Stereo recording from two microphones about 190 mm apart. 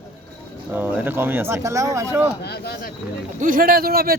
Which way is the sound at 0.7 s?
10° right (ahead or behind).